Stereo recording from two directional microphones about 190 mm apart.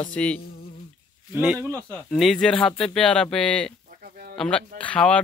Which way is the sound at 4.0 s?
50° right (ahead or behind).